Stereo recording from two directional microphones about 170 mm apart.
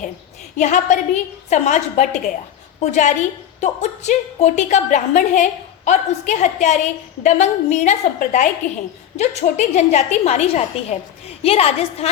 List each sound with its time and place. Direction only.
0.5 s a woman's voice: 45° left (ahead or behind)